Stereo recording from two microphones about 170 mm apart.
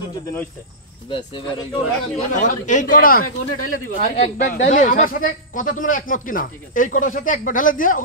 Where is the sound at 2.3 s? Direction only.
45° left (ahead or behind).